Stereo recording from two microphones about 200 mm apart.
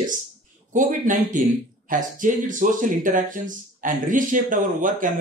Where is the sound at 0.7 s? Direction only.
40° right (ahead or behind).